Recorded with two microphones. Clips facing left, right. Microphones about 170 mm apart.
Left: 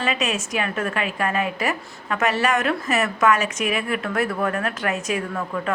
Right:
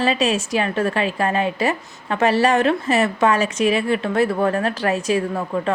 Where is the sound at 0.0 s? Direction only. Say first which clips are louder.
Right 5 dB; 30° right (ahead or behind).